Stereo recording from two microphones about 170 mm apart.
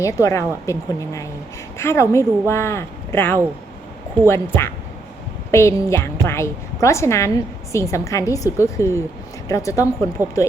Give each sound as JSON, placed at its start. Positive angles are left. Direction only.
{"t": 0.0, "sound": "a woman's voice", "side_deg": 20}
{"t": 10.2, "sound": "speech", "side_deg": -10}